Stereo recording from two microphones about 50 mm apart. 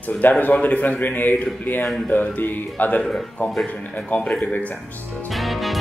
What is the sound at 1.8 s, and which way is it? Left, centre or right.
Speech, centre.